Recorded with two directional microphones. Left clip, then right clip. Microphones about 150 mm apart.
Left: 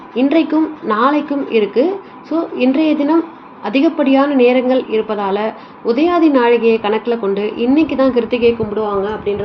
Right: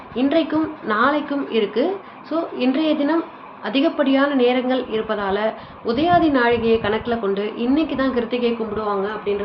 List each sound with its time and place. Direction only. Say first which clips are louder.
0.2 s a woman's voice: left 5 dB; 20° left (ahead or behind)